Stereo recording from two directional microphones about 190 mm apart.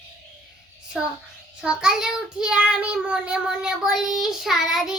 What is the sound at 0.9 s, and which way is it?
Child singing, 5° right (ahead or behind).